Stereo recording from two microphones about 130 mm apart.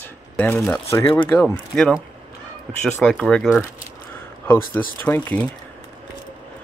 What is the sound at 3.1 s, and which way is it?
Speech, centre (ahead or behind).